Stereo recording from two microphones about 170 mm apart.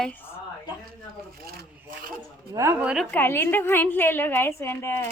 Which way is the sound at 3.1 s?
10° left (ahead or behind).